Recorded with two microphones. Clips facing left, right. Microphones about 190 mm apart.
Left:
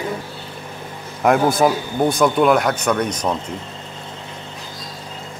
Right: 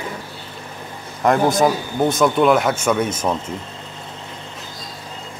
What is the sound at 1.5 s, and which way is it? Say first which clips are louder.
Speech: even; centre (ahead or behind).